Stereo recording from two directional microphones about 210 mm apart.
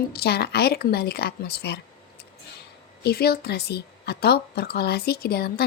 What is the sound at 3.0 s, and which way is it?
A woman's voice, 50° left (ahead or behind).